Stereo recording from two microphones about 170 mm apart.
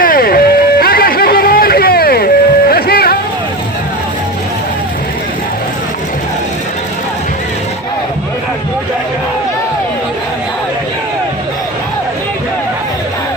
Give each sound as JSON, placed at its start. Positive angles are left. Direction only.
{"t": 0.0, "sound": "music", "side_deg": 60}